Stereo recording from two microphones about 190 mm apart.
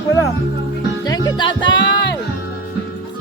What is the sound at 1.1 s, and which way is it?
Music, 25° left (ahead or behind).